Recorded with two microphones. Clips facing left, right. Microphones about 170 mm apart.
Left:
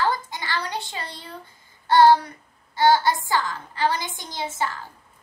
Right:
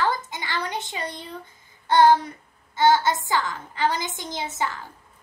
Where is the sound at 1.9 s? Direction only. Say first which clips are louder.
Left 1 dB; 20° right (ahead or behind).